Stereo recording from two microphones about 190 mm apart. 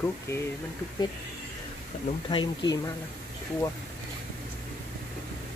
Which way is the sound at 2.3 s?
25° left (ahead or behind).